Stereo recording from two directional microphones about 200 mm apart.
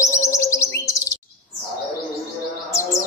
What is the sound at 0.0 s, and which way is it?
Chirp, 15° left (ahead or behind).